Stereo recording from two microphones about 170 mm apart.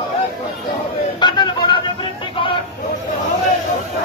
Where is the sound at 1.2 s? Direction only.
25° left (ahead or behind).